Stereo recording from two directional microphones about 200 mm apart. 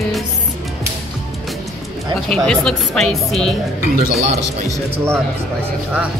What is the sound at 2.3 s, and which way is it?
Speech, 5° left (ahead or behind).